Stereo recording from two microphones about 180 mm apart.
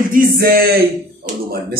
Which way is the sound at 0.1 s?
55° right (ahead or behind).